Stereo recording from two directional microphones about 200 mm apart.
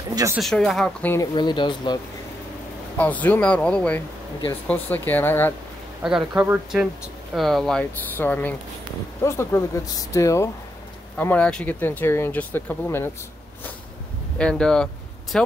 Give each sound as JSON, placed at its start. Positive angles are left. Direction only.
{"t": 0.1, "sound": "speech", "side_deg": -15}
{"t": 0.4, "sound": "speech", "side_deg": 0}
{"t": 3.0, "sound": "speech", "side_deg": 10}
{"t": 6.0, "sound": "speech", "side_deg": -5}
{"t": 14.4, "sound": "speech", "side_deg": 5}